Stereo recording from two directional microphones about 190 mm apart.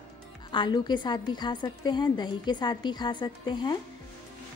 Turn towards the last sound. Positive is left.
turn(degrees=25)  # may be behind; listen again after turning